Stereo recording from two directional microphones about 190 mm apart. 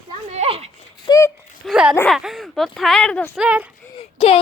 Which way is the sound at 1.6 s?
5° right (ahead or behind).